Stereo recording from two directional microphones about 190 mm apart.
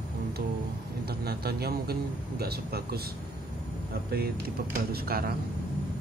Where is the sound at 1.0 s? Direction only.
55° right (ahead or behind).